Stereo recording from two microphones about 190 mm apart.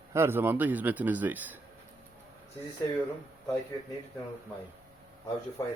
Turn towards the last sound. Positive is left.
turn(degrees=20)  # may be behind; listen again after turning